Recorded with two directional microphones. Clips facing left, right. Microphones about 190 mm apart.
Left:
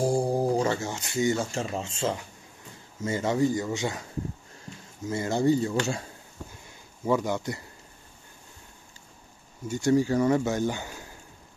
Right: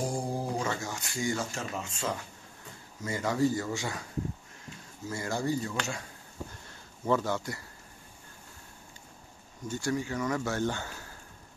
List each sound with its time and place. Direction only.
0.0 s speech: 30° left (ahead or behind)
5.0 s speech: 20° left (ahead or behind)
7.1 s speech: 15° left (ahead or behind)
9.7 s speech: 20° left (ahead or behind)
9.9 s speech: 35° left (ahead or behind)
10.4 s speech: 15° left (ahead or behind)